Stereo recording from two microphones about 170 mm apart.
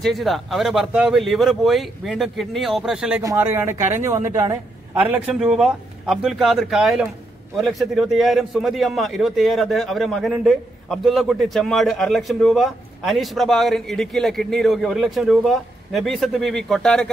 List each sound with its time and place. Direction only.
0.0 s a man's voice: centre (ahead or behind)
3.2 s speech: 15° right (ahead or behind)
5.1 s a man's voice: 5° right (ahead or behind)